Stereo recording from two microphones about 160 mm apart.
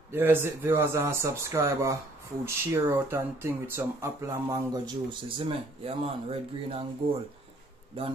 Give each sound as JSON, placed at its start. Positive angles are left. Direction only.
{"t": 0.1, "sound": "speech", "side_deg": -15}
{"t": 5.5, "sound": "speech", "side_deg": -35}